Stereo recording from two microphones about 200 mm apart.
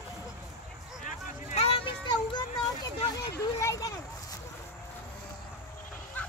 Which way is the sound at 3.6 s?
15° left (ahead or behind).